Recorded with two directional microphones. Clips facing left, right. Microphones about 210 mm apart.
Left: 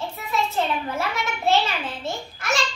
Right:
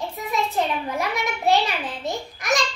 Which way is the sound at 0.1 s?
15° right (ahead or behind).